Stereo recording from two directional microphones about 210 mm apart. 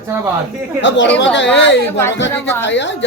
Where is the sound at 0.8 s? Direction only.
60° left (ahead or behind).